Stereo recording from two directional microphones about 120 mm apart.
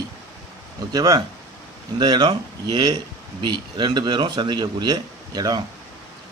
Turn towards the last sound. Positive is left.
turn(degrees=-35)  # may be behind; listen again after turning